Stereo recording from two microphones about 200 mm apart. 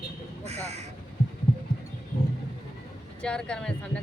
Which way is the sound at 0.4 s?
35° right (ahead or behind).